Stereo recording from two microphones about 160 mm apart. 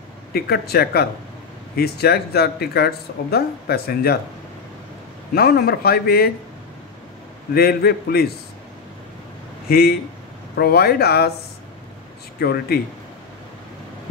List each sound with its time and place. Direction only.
0.3 s speech: 75° left (ahead or behind)
5.3 s speech: 70° left (ahead or behind)
7.5 s speech: 75° left (ahead or behind)
9.7 s speech: 75° left (ahead or behind)
12.4 s speech: 75° left (ahead or behind)